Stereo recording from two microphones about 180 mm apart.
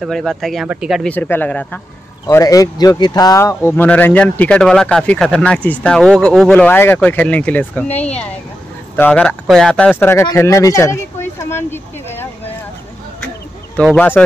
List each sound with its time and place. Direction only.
0.0 s speech: centre (ahead or behind)
1.1 s speech: 10° left (ahead or behind)
2.2 s speech: 20° left (ahead or behind)
13.9 s speech: 10° left (ahead or behind)